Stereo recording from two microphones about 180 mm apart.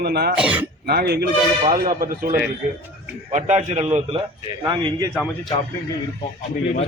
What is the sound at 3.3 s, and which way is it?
Speech, 40° right (ahead or behind).